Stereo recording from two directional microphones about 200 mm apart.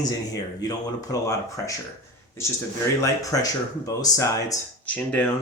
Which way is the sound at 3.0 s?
15° left (ahead or behind).